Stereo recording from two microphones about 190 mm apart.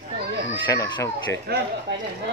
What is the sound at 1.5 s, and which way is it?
Speech, 55° right (ahead or behind).